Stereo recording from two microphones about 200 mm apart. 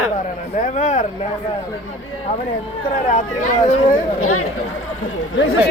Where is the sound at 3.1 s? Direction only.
40° left (ahead or behind).